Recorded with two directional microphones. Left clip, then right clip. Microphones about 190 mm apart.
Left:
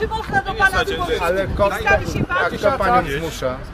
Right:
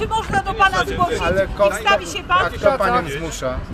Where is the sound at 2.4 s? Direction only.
10° right (ahead or behind).